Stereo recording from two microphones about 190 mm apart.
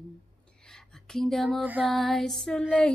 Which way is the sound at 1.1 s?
Centre (ahead or behind).